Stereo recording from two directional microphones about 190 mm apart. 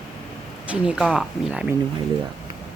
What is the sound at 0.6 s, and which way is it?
A woman's voice, 5° right (ahead or behind).